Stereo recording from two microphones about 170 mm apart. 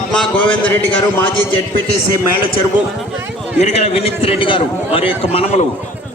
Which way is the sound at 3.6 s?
40° left (ahead or behind).